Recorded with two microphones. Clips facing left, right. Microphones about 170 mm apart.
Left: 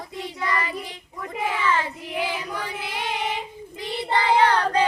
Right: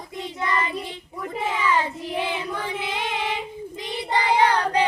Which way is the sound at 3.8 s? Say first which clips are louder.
Left 1 dB; 15° right (ahead or behind).